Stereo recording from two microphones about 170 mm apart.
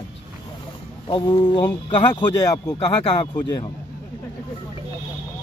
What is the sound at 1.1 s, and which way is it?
Speech, 25° left (ahead or behind).